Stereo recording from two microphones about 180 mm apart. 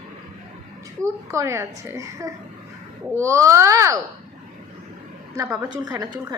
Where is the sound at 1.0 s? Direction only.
15° right (ahead or behind).